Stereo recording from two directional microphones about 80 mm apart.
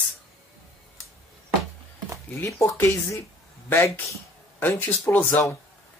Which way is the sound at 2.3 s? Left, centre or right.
Left.